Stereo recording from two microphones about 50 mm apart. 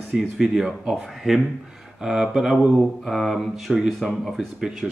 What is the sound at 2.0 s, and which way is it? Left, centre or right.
Speech, centre.